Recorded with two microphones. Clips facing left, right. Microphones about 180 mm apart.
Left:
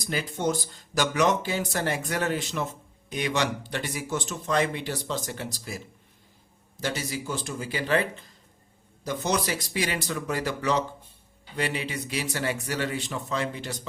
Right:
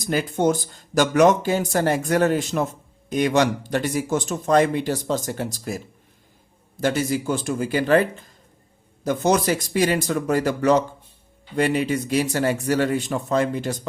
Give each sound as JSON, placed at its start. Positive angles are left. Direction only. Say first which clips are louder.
{"t": 0.0, "sound": "speech", "louder": "right 7 dB", "side_deg": -50}